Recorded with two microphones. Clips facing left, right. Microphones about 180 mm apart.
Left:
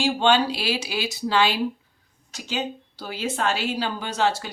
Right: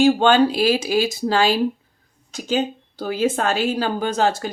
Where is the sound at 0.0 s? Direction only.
50° right (ahead or behind).